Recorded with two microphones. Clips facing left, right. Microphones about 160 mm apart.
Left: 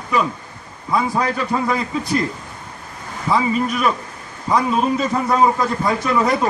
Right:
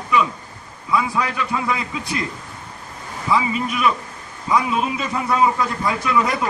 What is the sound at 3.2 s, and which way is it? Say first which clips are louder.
A man's voice: left 2 dB; 40° left (ahead or behind).